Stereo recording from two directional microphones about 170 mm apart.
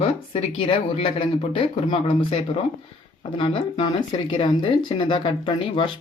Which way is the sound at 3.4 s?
30° left (ahead or behind).